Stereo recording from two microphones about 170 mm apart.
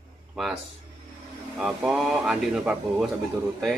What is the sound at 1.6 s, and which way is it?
Speech, 5° right (ahead or behind).